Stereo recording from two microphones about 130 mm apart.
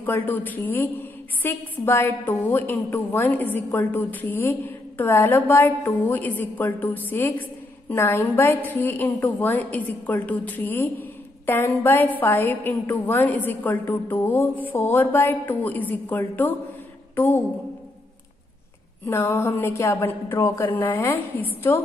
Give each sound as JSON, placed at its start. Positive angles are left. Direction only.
{"t": 0.0, "sound": "a woman's voice", "side_deg": 15}
{"t": 17.1, "sound": "a sound", "side_deg": 15}
{"t": 19.0, "sound": "speech", "side_deg": 15}